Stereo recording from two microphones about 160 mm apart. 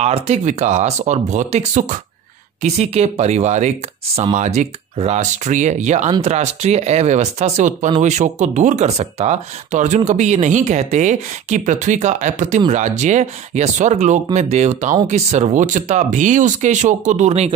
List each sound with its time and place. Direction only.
0.0 s speech: 40° right (ahead or behind)